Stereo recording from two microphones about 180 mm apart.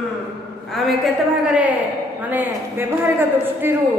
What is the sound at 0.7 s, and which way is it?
A woman's voice, centre (ahead or behind).